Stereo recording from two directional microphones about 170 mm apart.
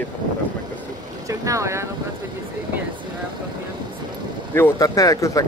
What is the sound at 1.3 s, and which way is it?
Speech, 20° right (ahead or behind).